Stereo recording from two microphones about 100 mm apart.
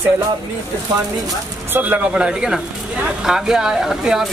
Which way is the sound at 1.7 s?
20° right (ahead or behind).